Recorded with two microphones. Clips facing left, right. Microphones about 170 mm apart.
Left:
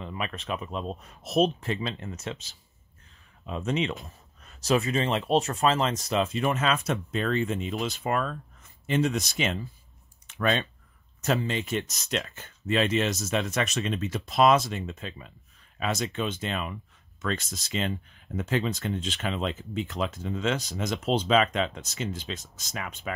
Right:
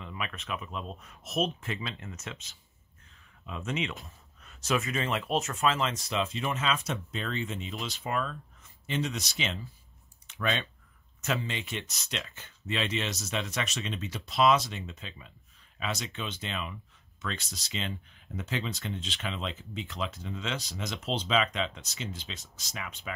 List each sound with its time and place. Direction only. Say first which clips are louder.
0.0 s speech: left 5 dB; 35° left (ahead or behind)
10.2 s clicking: left 5 dB; 45° left (ahead or behind)
11.1 s speech: left 6 dB; 40° left (ahead or behind)